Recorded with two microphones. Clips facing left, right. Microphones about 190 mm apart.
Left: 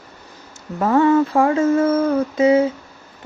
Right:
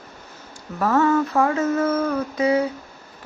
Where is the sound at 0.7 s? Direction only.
20° left (ahead or behind).